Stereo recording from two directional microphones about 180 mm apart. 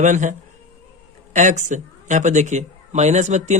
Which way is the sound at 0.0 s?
45° right (ahead or behind).